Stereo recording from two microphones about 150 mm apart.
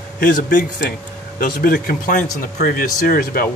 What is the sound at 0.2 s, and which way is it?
Speech, 80° left.